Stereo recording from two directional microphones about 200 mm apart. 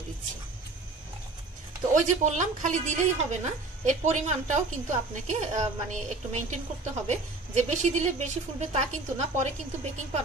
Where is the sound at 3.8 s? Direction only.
35° right (ahead or behind).